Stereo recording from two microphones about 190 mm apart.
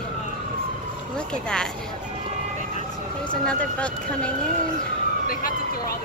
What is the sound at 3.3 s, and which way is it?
Speech, 5° left (ahead or behind).